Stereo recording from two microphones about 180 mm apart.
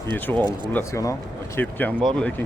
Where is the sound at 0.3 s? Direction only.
25° right (ahead or behind).